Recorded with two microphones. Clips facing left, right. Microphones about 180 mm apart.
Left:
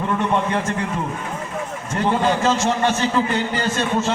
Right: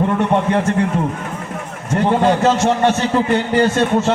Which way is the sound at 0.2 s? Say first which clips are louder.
Right 5 dB; 55° right (ahead or behind).